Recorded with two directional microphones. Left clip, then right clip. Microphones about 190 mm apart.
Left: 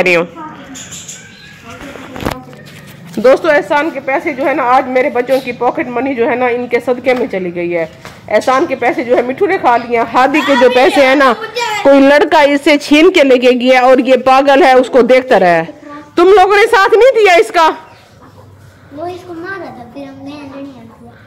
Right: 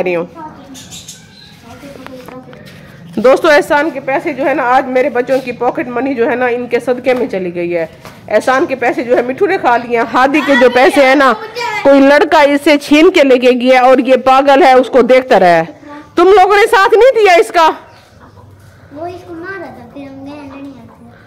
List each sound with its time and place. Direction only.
0.0 s speech: 5° right (ahead or behind)
3.2 s speech: 20° right (ahead or behind)
3.4 s a woman's voice: 50° right (ahead or behind)
3.9 s speech: 5° right (ahead or behind)
10.0 s speech: 35° right (ahead or behind)
10.3 s speech: 15° right (ahead or behind)